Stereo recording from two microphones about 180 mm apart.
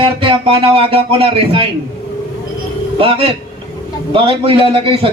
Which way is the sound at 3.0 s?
30° right (ahead or behind).